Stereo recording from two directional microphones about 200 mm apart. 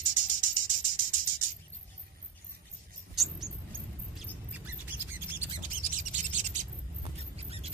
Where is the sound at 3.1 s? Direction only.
Centre (ahead or behind).